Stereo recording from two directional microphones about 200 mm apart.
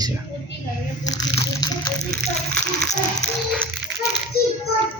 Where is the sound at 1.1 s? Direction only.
15° left (ahead or behind).